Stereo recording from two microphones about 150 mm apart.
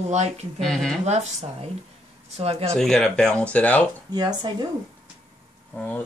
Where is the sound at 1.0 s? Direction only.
50° right (ahead or behind).